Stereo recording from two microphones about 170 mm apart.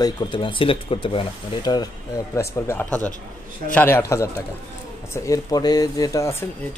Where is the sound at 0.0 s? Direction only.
30° left (ahead or behind).